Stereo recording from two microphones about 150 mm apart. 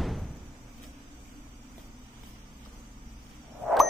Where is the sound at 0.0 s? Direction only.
Centre (ahead or behind).